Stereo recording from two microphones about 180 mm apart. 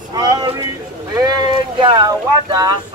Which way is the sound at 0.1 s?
20° right (ahead or behind).